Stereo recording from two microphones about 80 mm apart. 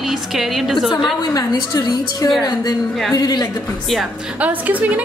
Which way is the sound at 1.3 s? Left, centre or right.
Left.